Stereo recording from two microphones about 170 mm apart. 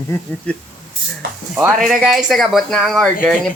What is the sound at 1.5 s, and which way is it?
Speech, 5° right (ahead or behind).